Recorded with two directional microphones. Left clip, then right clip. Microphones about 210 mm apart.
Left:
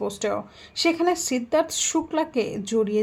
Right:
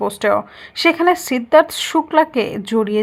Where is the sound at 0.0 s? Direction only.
15° right (ahead or behind).